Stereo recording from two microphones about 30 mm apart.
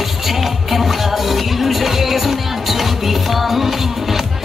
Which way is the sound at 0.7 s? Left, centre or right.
Centre.